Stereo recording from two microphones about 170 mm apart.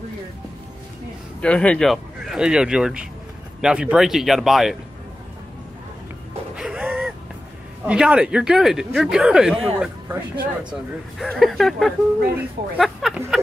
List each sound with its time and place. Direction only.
1.4 s speech: 5° left (ahead or behind)
6.5 s music: 5° right (ahead or behind)
7.8 s speech: 5° right (ahead or behind)
10.7 s speech: centre (ahead or behind)